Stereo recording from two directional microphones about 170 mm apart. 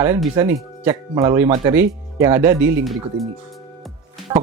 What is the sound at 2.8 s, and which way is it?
Speech, centre (ahead or behind).